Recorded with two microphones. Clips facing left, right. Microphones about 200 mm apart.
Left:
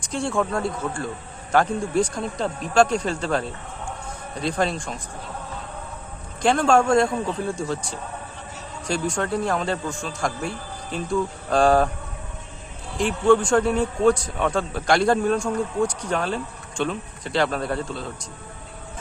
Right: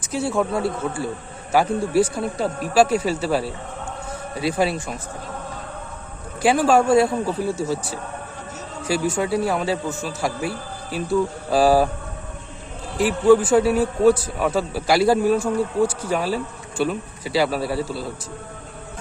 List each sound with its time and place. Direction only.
0.0 s a man's voice: 5° right (ahead or behind)
6.4 s a man's voice: 5° right (ahead or behind)
13.0 s a man's voice: 5° right (ahead or behind)